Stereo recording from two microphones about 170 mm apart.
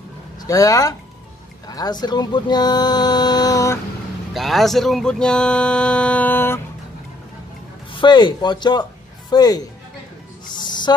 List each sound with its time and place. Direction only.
0.4 s speech: 20° left (ahead or behind)
4.3 s speech: centre (ahead or behind)
7.9 s speech: 25° left (ahead or behind)
10.5 s owl: 25° left (ahead or behind)